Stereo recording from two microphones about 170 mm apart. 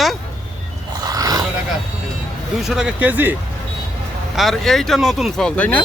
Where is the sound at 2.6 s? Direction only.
5° right (ahead or behind).